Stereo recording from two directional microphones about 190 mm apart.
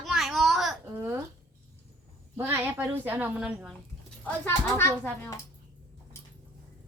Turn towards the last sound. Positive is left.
turn(degrees=15)  # may be behind; listen again after turning